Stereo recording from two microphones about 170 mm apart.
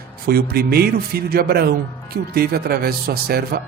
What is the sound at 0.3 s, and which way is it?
Speech, 65° right (ahead or behind).